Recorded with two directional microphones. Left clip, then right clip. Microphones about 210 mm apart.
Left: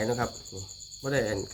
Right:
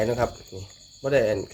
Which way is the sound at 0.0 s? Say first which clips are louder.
Right 5 dB; 25° right (ahead or behind).